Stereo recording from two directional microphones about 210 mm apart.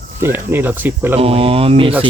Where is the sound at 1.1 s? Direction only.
25° right (ahead or behind).